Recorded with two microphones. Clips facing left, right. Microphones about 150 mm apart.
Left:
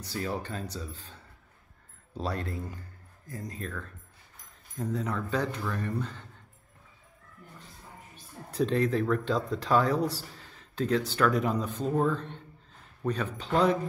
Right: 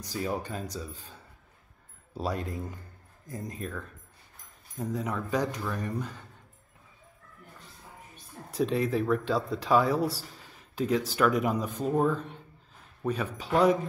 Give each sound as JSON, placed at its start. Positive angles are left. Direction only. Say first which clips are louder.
{"t": 0.0, "sound": "speech", "louder": "right 1 dB", "side_deg": -10}
{"t": 8.5, "sound": "speech", "louder": "left 1 dB", "side_deg": -5}